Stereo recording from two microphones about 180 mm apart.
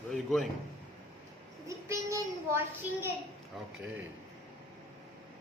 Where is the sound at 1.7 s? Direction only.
15° right (ahead or behind).